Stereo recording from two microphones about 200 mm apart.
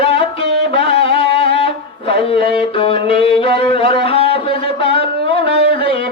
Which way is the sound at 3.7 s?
25° left (ahead or behind).